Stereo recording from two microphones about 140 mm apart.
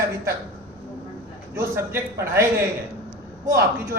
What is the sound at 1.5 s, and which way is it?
Speech, 20° right (ahead or behind).